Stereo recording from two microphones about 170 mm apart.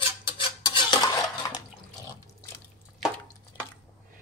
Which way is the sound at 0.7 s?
25° left (ahead or behind).